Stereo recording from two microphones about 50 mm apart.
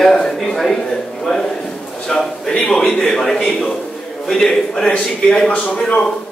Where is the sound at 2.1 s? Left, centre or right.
Centre.